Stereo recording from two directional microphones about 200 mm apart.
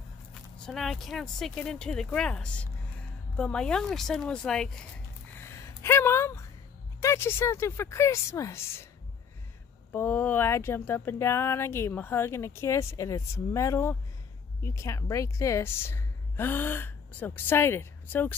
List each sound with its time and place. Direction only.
0.3 s speech: centre (ahead or behind)
5.5 s a sound: 15° left (ahead or behind)
7.0 s speech: 15° left (ahead or behind)
9.9 s a woman's voice: 10° left (ahead or behind)